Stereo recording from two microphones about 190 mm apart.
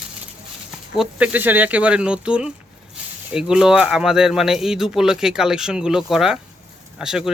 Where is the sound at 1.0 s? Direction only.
5° right (ahead or behind).